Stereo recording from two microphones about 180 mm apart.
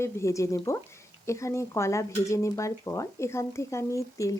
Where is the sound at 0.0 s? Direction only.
15° left (ahead or behind).